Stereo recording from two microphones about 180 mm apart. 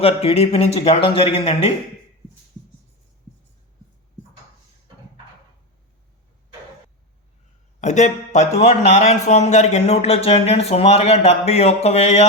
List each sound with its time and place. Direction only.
0.0 s a man's voice: 35° left (ahead or behind)
7.8 s a man's voice: 40° left (ahead or behind)